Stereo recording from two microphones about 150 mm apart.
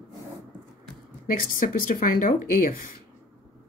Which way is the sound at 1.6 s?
65° left (ahead or behind).